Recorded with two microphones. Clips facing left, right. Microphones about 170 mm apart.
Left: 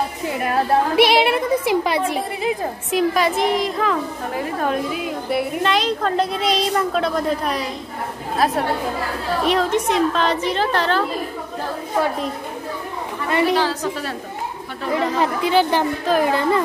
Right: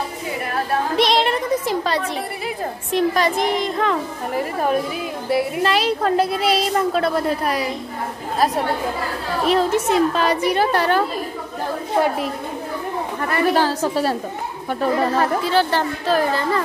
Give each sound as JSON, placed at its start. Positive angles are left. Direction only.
{"t": 0.9, "sound": "a sound", "side_deg": 10}
{"t": 2.9, "sound": "a woman's voice", "side_deg": 5}
{"t": 5.3, "sound": "a woman's voice", "side_deg": 0}
{"t": 9.5, "sound": "a woman's voice", "side_deg": -5}
{"t": 13.6, "sound": "a woman's voice", "side_deg": -40}
{"t": 15.0, "sound": "speech", "side_deg": 15}